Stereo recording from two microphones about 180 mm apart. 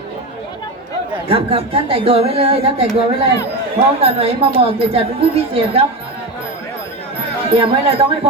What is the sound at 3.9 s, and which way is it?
Speech, 35° right (ahead or behind).